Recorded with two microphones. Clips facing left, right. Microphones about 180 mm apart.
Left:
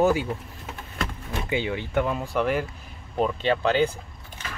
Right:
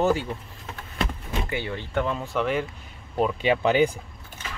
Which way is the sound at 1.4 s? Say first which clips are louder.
Left 4 dB; 15° left (ahead or behind).